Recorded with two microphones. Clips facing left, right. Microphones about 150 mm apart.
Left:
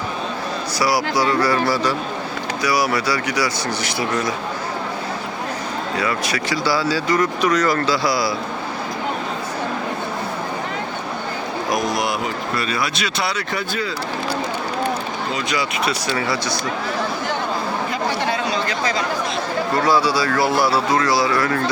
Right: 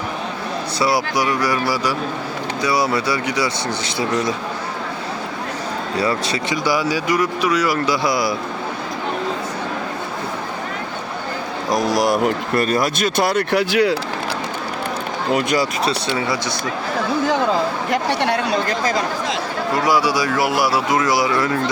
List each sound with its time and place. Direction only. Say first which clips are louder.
0.8 s speech: even; 25° right (ahead or behind)
2.6 s speech: right 1 dB; 25° right (ahead or behind)
6.0 s speech: right 3 dB; 30° right (ahead or behind)
11.7 s a man's voice: right 5 dB; 40° right (ahead or behind)
12.2 s speech: right 5 dB; 50° right (ahead or behind); by 14.0 s 70° right (ahead or behind)
15.3 s speech: right 7 dB; 55° right (ahead or behind)
15.8 s speech: right 1 dB; 25° right (ahead or behind)
17.9 s speech: right 5 dB; 70° right (ahead or behind)
19.8 s speech: even; 15° right (ahead or behind)